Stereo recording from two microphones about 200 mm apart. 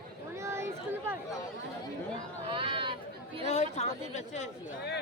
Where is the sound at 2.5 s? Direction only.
25° right (ahead or behind).